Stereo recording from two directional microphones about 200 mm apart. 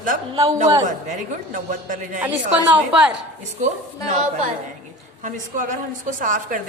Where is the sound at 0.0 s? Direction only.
40° right (ahead or behind).